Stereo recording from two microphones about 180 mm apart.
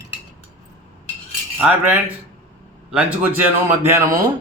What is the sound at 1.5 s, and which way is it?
A man's voice, 10° right (ahead or behind).